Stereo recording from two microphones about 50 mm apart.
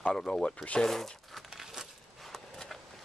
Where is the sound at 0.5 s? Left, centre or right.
Left.